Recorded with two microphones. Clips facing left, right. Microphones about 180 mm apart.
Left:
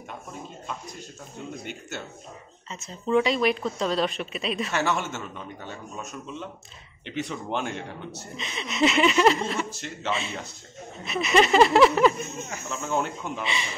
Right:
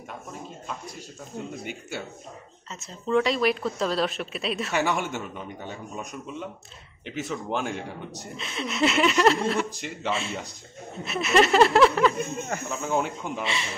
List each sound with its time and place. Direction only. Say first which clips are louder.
1.5 s a man's voice: right 1 dB; 5° right (ahead or behind)
4.7 s a man's voice: right 3 dB; 15° right (ahead or behind)
9.7 s a man's voice: right 1 dB; 10° right (ahead or behind)
10.1 s a woman's voice: right 1 dB; centre (ahead or behind)
12.2 s speech: right 5 dB; 55° right (ahead or behind)
12.8 s a woman's voice: even; 10° right (ahead or behind)